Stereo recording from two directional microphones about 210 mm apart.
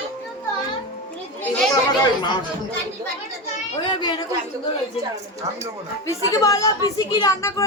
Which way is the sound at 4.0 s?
20° left (ahead or behind).